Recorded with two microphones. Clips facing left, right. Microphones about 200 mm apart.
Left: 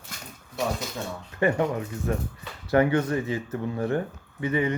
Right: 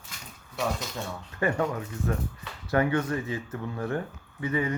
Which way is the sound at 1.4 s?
25° left (ahead or behind).